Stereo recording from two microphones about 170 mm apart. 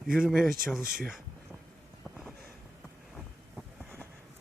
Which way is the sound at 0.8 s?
60° right (ahead or behind).